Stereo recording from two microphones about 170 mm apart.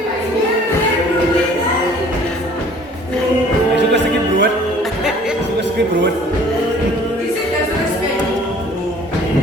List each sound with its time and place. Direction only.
3.8 s music: 90° right